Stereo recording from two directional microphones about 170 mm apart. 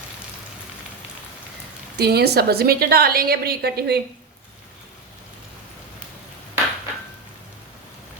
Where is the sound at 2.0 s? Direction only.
70° right (ahead or behind).